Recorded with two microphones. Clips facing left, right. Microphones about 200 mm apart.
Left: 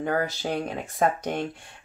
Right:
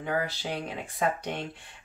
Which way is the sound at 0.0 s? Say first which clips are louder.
Left 4 dB; 45° left (ahead or behind).